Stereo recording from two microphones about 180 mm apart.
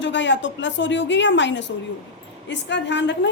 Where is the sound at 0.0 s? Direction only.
90° left.